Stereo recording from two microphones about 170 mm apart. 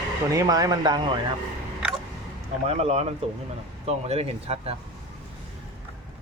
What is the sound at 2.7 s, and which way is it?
Speech, 40° right (ahead or behind).